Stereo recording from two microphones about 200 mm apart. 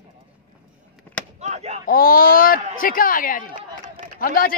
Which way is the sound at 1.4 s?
30° right (ahead or behind).